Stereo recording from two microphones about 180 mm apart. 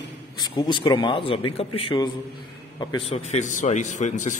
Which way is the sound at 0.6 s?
30° left (ahead or behind).